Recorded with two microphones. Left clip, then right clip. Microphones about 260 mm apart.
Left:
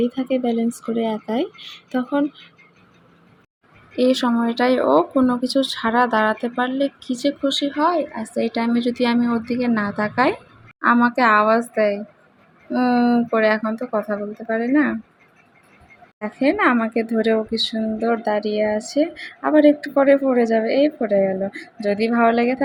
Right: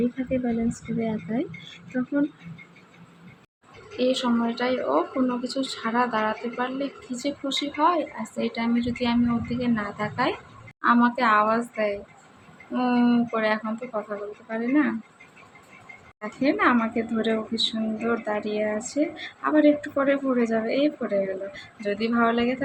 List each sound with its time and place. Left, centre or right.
0.2 s speech: left
3.9 s speech: left
16.4 s speech: left